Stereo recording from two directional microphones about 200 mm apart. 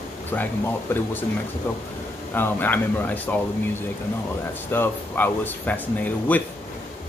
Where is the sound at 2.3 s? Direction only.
10° left (ahead or behind).